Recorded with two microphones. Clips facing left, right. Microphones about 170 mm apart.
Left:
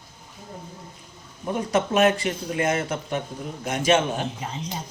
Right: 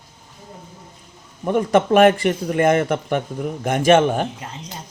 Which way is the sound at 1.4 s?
55° right (ahead or behind).